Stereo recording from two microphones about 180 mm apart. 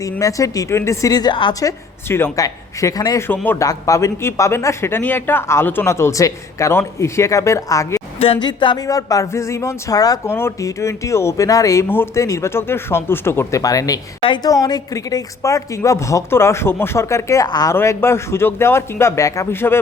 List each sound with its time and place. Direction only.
0.0 s a woman's voice: 20° left (ahead or behind)
2.0 s speech: 15° left (ahead or behind)
8.2 s speech: 30° left (ahead or behind); by 19.8 s 10° left (ahead or behind)